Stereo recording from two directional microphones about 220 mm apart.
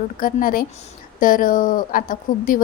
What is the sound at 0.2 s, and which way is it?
A woman's voice, 40° left (ahead or behind).